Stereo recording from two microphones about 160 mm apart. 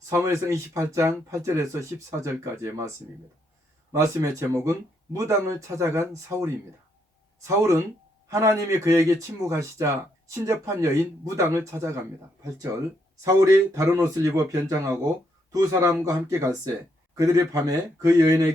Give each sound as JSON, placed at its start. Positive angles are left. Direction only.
{"t": 0.1, "sound": "speech", "side_deg": -20}
{"t": 3.9, "sound": "speech", "side_deg": -20}
{"t": 13.2, "sound": "speech", "side_deg": -20}